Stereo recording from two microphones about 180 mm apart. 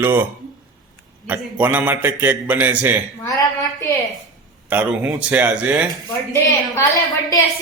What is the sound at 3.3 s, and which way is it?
Speech, 20° left (ahead or behind).